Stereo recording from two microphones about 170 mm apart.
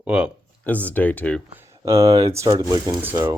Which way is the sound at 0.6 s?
10° left (ahead or behind).